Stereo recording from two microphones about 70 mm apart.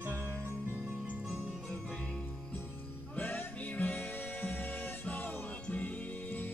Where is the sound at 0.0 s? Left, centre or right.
Right.